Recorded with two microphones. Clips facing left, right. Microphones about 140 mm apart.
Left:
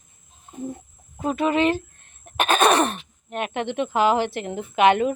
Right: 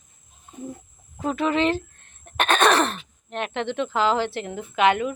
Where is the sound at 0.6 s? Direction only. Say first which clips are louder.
Left 4 dB; 20° left (ahead or behind).